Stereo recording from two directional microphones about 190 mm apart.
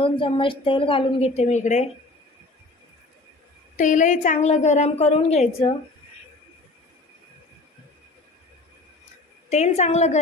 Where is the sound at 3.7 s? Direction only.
40° left (ahead or behind).